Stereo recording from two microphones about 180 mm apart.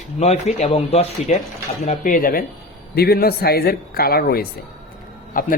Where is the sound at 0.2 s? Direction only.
35° left (ahead or behind).